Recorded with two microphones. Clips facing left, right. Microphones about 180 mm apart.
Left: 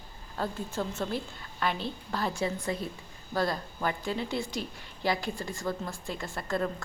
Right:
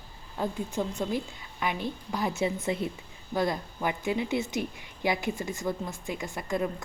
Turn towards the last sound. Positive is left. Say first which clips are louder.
# right 1 dB
turn(degrees=-15)  # may be behind; listen again after turning